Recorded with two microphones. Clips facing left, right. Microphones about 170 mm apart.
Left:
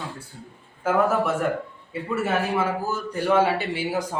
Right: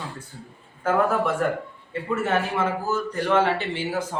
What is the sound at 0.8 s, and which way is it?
A man's voice, 10° left (ahead or behind).